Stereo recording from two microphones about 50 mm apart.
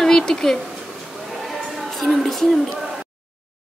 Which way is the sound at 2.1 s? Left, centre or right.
Centre.